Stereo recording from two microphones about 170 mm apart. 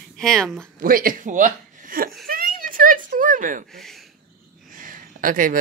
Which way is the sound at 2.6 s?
55° right (ahead or behind).